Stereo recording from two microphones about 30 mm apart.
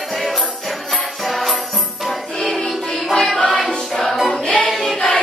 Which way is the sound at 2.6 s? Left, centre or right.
Centre.